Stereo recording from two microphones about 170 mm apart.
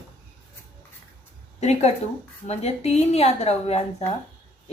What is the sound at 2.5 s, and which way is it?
A woman's voice, 40° left (ahead or behind).